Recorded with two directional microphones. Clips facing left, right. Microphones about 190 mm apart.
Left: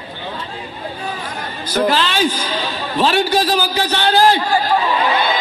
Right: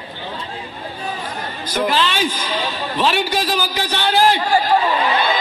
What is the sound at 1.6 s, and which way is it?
A woman's voice, 30° left (ahead or behind).